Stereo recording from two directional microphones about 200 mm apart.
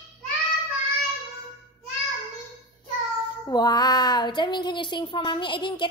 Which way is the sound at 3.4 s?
20° left (ahead or behind).